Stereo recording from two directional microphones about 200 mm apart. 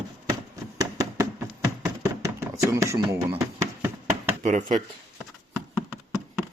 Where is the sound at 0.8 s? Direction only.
15° right (ahead or behind).